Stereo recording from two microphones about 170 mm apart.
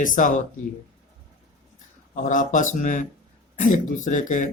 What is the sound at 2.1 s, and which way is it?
Speech, 50° left (ahead or behind).